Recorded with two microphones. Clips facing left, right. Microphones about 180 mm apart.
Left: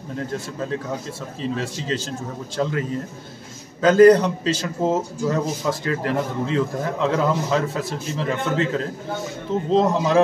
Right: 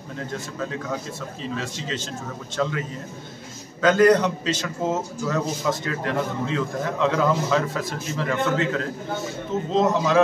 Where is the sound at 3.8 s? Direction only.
30° left (ahead or behind).